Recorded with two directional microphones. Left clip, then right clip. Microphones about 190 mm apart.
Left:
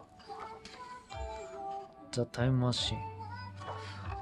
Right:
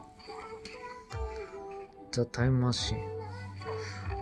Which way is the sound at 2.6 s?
25° left (ahead or behind).